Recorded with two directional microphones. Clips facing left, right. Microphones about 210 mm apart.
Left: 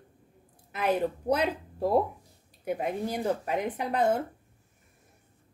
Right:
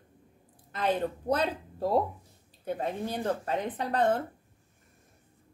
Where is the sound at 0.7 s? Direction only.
10° left (ahead or behind).